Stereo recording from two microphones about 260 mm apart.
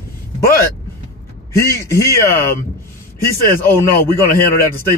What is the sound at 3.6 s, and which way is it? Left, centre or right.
Speech, centre.